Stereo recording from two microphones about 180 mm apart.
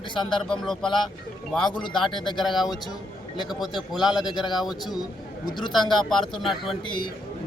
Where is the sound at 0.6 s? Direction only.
Centre (ahead or behind).